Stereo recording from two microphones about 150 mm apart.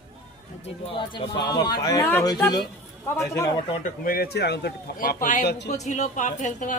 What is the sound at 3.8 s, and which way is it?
A man's voice, 85° left.